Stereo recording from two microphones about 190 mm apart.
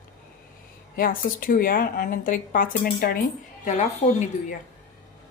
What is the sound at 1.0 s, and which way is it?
A woman's voice, 50° left (ahead or behind).